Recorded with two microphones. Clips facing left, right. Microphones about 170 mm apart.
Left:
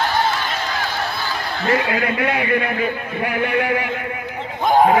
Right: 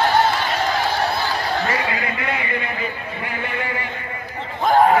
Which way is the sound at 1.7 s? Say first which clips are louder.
Left 5 dB; 60° left (ahead or behind).